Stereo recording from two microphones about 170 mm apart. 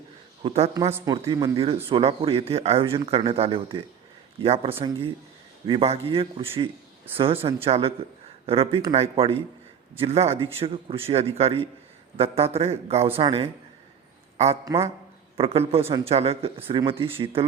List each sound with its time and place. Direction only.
0.4 s a man's voice: 35° right (ahead or behind)